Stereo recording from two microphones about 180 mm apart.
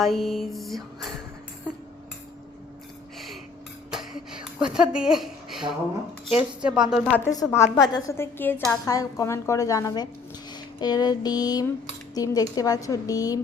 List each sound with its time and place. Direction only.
0.0 s music: centre (ahead or behind)
3.9 s a sound: 5° right (ahead or behind)
6.6 s music: 5° right (ahead or behind)
7.2 s a woman's voice: 15° left (ahead or behind)